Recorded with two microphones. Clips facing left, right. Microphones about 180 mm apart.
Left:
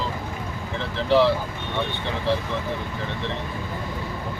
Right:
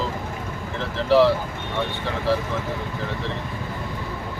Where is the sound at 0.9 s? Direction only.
Centre (ahead or behind).